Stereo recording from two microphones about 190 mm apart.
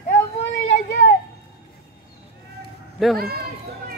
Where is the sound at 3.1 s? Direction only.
55° right (ahead or behind).